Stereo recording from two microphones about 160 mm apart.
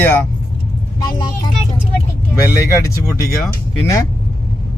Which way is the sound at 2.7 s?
20° left (ahead or behind).